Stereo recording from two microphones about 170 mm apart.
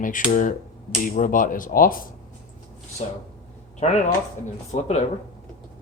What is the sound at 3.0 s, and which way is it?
Speech, 40° left (ahead or behind).